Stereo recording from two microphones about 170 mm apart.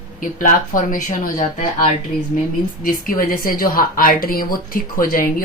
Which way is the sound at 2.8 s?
55° left (ahead or behind).